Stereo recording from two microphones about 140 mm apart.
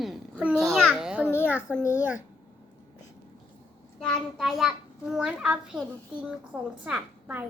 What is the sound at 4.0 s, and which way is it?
A child's voice, centre (ahead or behind).